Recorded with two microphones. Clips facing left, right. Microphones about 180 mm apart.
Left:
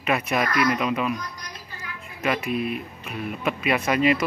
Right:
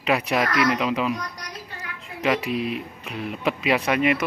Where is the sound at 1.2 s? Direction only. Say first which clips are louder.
Right 3 dB; 75° right (ahead or behind).